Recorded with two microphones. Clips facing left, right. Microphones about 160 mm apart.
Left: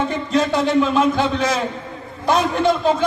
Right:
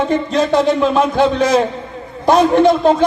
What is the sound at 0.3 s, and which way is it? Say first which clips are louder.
Speech: right 2 dB; 35° right (ahead or behind).